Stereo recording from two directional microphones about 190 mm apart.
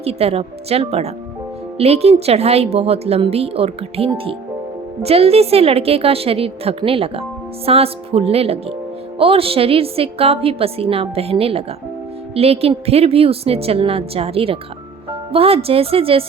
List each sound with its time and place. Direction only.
0.0 s a woman's voice: 30° right (ahead or behind)